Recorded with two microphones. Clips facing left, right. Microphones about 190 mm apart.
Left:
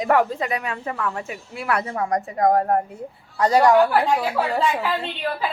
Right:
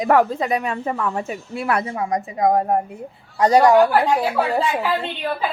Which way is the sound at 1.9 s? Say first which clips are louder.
Even; 10° right (ahead or behind).